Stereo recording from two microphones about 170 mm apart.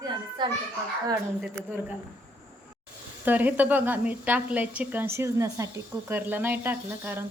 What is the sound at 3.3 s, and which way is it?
Speech, 10° right (ahead or behind).